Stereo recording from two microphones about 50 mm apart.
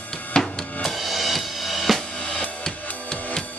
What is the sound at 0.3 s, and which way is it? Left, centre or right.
Music, centre.